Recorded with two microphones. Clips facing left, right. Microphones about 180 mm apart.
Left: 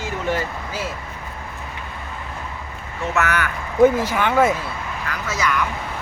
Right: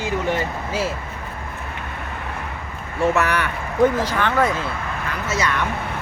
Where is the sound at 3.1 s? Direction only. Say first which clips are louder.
Left 2 dB; 35° right (ahead or behind).